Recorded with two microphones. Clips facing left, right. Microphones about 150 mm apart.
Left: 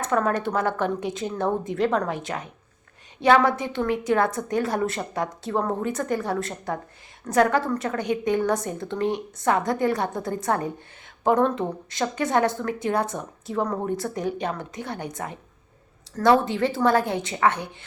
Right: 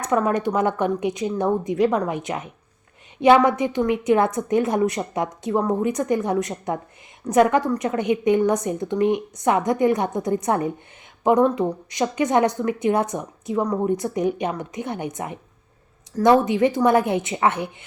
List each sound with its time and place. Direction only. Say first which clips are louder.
0.0 s a woman's voice: right 3 dB; 10° right (ahead or behind)